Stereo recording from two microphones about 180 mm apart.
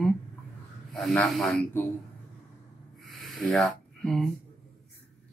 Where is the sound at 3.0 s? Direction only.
Centre (ahead or behind).